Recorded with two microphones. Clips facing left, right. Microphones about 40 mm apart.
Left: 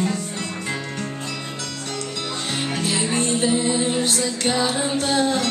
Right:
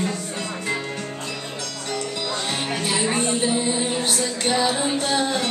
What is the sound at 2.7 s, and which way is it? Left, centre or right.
Music, right.